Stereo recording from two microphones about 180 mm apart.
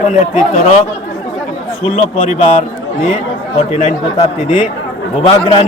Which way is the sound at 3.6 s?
35° left (ahead or behind).